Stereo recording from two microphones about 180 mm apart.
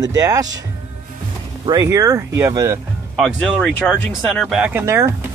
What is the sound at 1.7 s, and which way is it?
Speech, 20° right (ahead or behind).